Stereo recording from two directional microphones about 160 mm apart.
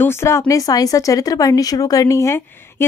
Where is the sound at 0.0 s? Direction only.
15° left (ahead or behind).